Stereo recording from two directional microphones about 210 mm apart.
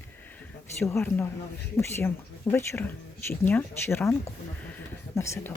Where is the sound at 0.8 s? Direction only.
10° left (ahead or behind).